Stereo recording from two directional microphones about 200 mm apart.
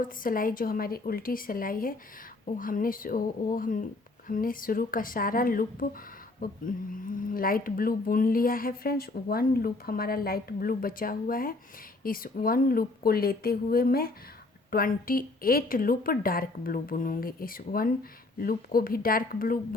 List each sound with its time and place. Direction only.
0.0 s speech: 45° left (ahead or behind)